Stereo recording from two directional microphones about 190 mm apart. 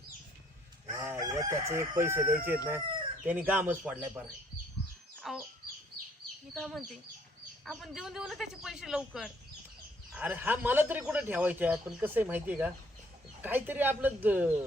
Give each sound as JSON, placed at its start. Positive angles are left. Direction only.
{"t": 0.9, "sound": "chicken", "side_deg": -15}
{"t": 2.3, "sound": "a child's voice", "side_deg": -10}
{"t": 6.5, "sound": "a man's voice", "side_deg": 0}